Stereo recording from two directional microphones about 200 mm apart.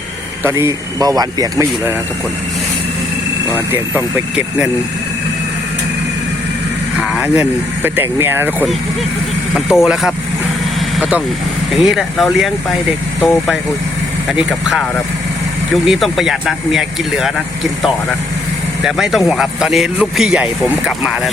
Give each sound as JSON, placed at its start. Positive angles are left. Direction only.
{"t": 0.4, "sound": "speech", "side_deg": -15}
{"t": 3.5, "sound": "speech", "side_deg": -10}
{"t": 7.1, "sound": "speech", "side_deg": -5}
{"t": 10.9, "sound": "vehicle", "side_deg": -5}
{"t": 11.7, "sound": "speech", "side_deg": 0}